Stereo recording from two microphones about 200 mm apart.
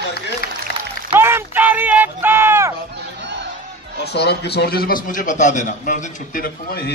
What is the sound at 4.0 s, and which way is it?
A man's voice, 55° left (ahead or behind).